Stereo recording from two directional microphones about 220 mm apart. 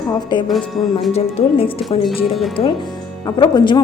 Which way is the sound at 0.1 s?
20° left (ahead or behind).